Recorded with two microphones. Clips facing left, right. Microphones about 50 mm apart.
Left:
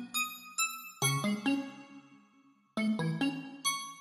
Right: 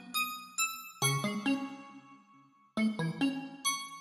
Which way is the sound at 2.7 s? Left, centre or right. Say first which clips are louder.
Even; centre.